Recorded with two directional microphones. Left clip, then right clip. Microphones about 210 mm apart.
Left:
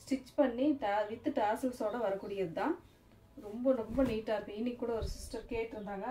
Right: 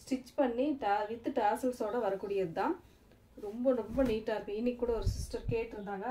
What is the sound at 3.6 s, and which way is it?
A woman's voice, 45° right (ahead or behind).